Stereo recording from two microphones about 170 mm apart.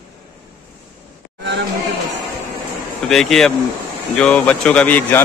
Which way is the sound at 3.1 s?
Centre (ahead or behind).